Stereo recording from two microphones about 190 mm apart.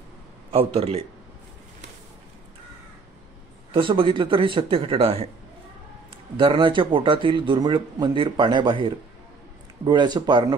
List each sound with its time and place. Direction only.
0.5 s a man's voice: 30° right (ahead or behind)
3.7 s speech: 25° right (ahead or behind)
6.3 s speech: 25° right (ahead or behind)